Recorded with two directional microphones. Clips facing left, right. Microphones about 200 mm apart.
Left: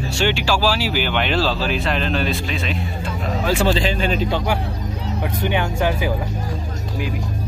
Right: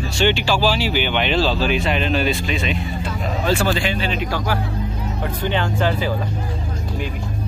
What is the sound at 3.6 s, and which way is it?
Speech, 35° left (ahead or behind).